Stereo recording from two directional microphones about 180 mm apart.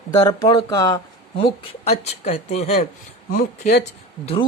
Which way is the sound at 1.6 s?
35° left (ahead or behind).